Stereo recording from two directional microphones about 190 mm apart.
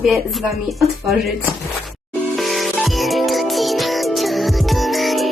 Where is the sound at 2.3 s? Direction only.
Centre (ahead or behind).